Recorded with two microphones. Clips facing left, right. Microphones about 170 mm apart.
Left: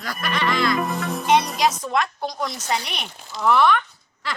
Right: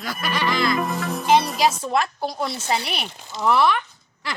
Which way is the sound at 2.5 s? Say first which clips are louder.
Right 2 dB; 5° right (ahead or behind).